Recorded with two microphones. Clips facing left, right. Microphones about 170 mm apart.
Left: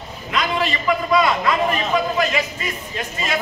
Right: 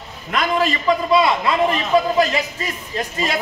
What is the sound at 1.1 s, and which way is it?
A man's voice, 30° right (ahead or behind).